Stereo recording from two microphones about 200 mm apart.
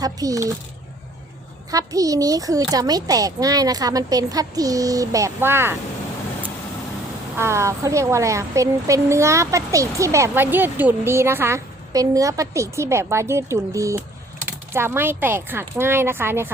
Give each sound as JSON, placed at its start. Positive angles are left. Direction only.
{"t": 0.0, "sound": "a woman's voice", "side_deg": -15}
{"t": 1.7, "sound": "a woman's voice", "side_deg": -15}
{"t": 7.3, "sound": "a woman's voice", "side_deg": -15}